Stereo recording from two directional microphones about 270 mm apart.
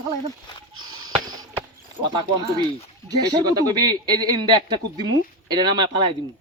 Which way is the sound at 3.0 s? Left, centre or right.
Centre.